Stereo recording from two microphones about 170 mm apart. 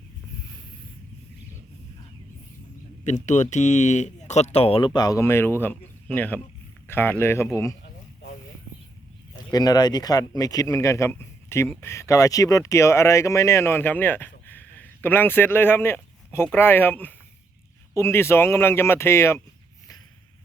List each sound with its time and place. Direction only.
3.0 s speech: 45° left (ahead or behind)
4.9 s speech: 20° left (ahead or behind)
9.5 s speech: 25° left (ahead or behind)